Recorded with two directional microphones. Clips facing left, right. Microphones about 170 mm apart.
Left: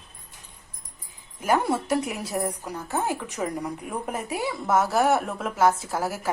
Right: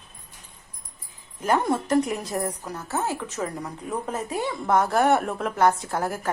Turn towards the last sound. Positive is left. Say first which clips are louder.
# right 1 dB
turn(degrees=5)  # may be behind; listen again after turning